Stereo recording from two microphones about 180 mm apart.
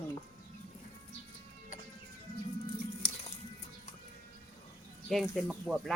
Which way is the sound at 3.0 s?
30° left (ahead or behind).